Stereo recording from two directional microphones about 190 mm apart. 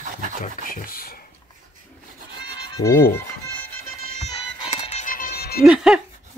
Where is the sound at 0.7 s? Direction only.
50° left (ahead or behind).